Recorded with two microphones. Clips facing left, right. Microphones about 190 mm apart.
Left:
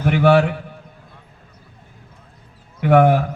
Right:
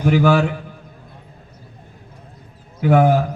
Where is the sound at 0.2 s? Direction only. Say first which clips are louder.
Left 4 dB; 60° left (ahead or behind).